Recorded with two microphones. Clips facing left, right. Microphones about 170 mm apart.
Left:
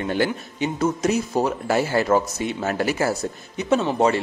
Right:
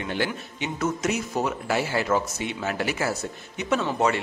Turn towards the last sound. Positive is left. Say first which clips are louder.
# left 4 dB
turn(degrees=25)  # may be behind; listen again after turning